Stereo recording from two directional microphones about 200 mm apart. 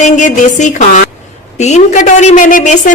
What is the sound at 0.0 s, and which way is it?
A woman's voice, 40° left (ahead or behind).